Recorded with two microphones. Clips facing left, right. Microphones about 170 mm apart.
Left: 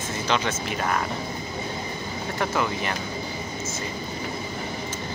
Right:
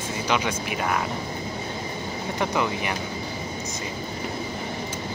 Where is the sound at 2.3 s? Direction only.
15° right (ahead or behind).